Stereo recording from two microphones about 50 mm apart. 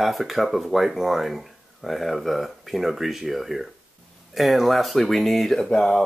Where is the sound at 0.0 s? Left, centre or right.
Centre.